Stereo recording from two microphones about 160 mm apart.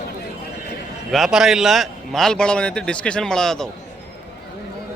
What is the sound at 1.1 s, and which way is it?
A man's voice, centre (ahead or behind).